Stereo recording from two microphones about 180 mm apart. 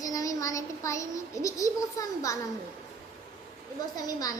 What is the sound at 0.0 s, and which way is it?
A child's voice, 20° left (ahead or behind).